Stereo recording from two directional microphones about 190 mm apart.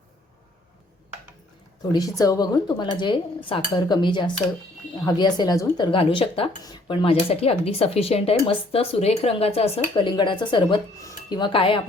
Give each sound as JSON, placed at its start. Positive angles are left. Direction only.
{"t": 1.9, "sound": "a woman's voice", "side_deg": 20}